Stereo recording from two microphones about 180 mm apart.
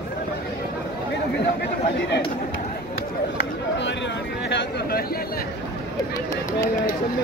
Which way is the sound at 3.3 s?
75° left (ahead or behind).